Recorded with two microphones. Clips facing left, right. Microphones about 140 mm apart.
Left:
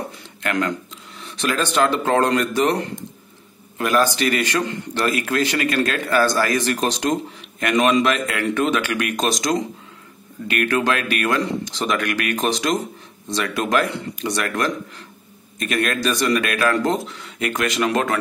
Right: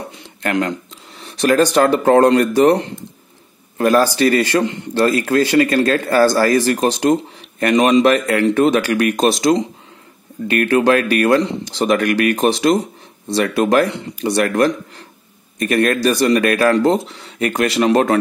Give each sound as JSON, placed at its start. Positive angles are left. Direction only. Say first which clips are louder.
{"t": 0.4, "sound": "speech", "louder": "right 4 dB", "side_deg": -30}
{"t": 1.2, "sound": "speech", "louder": "right 9 dB", "side_deg": -40}